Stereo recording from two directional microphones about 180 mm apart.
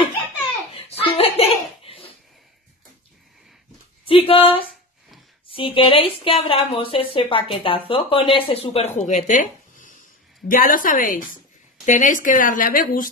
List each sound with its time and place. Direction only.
0.7 s belly laugh: 35° left (ahead or behind)
1.1 s laughter: 35° left (ahead or behind)
4.0 s a woman's voice: 30° left (ahead or behind); by 13.1 s 50° left (ahead or behind)